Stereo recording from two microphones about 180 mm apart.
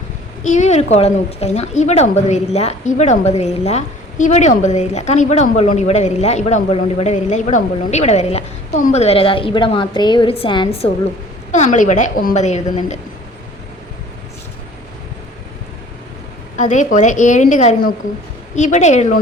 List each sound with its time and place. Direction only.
0.4 s a woman's voice: 40° left (ahead or behind)
16.6 s a woman's voice: 40° left (ahead or behind)